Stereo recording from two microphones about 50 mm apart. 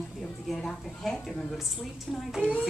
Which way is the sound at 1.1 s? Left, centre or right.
Centre.